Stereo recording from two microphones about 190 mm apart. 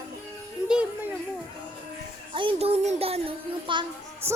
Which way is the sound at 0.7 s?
5° right (ahead or behind).